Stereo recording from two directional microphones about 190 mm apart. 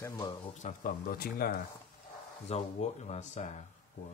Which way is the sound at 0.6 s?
40° left (ahead or behind).